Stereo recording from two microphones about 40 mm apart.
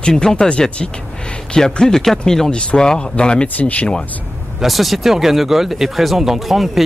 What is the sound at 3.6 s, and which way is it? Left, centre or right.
Speech, left.